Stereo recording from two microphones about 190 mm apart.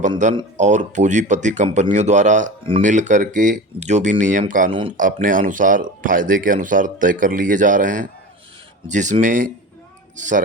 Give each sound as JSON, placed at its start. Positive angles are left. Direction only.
{"t": 0.5, "sound": "speech", "side_deg": -40}